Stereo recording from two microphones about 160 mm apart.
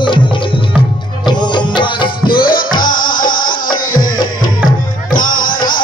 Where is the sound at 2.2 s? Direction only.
65° left (ahead or behind).